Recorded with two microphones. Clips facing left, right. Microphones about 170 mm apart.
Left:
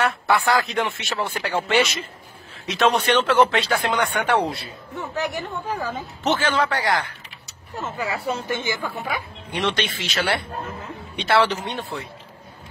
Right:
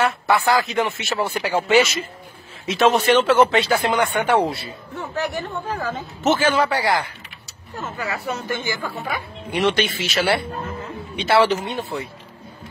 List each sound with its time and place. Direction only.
0.0 s speech: centre (ahead or behind)
5.1 s speech: 15° left (ahead or behind)
6.4 s speech: 10° right (ahead or behind)
7.7 s speech: 10° left (ahead or behind)
8.3 s a woman's voice: 25° left (ahead or behind)
9.5 s speech: 10° right (ahead or behind)